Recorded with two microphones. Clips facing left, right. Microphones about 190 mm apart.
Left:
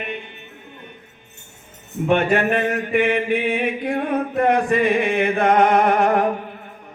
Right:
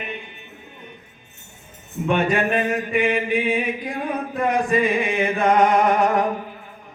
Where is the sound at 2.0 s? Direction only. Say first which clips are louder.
Left 2 dB; 60° left (ahead or behind).